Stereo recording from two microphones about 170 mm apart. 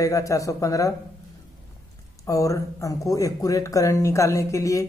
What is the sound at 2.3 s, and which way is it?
Speech, 20° left (ahead or behind).